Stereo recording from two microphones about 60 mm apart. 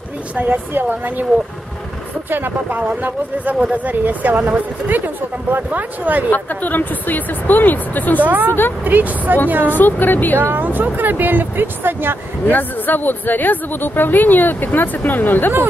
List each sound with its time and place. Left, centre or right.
0.4 s speech: right
2.2 s speech: right
6.3 s speech: left
8.2 s speech: right
9.7 s speech: left
10.4 s speech: right
12.4 s speech: left